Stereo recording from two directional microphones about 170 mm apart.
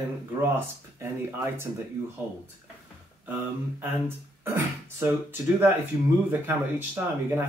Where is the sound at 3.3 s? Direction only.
10° right (ahead or behind).